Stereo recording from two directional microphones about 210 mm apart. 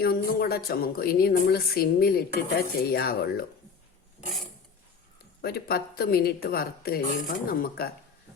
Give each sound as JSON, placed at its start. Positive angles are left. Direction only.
{"t": 0.0, "sound": "speech", "side_deg": 45}
{"t": 5.4, "sound": "speech", "side_deg": 50}